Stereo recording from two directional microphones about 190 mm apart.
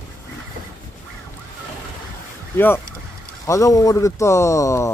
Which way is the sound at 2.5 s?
10° left (ahead or behind).